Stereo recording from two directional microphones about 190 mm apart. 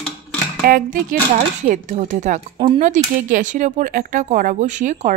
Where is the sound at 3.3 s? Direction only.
45° right (ahead or behind).